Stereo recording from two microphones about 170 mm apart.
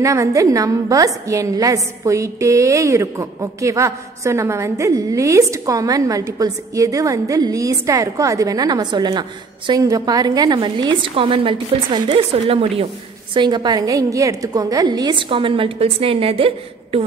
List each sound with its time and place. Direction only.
0.0 s a woman's voice: 20° right (ahead or behind); by 17.0 s 35° right (ahead or behind)